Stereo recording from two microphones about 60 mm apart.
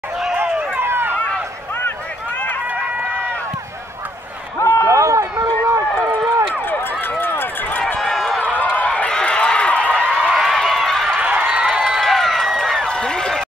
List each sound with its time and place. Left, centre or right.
0.4 s run: right
4.6 s run: left
4.8 s run: right
6.7 s run: left
8.0 s run: centre
8.6 s run: left
10.3 s run: centre
11.2 s run: right
12.0 s run: centre